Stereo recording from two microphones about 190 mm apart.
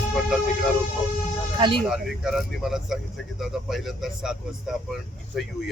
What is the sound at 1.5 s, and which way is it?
Speech, 25° right (ahead or behind).